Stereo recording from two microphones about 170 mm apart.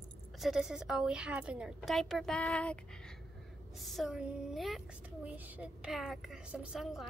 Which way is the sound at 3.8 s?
Centre (ahead or behind).